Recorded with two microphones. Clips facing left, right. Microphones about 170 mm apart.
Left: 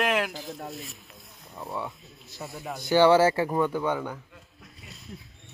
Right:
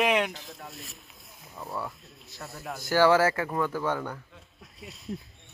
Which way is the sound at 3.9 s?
5° left (ahead or behind).